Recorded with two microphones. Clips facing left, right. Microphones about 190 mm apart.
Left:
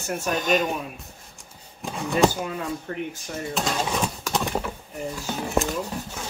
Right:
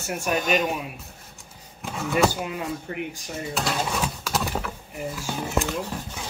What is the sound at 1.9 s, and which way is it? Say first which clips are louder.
Speech: left 1 dB; centre (ahead or behind).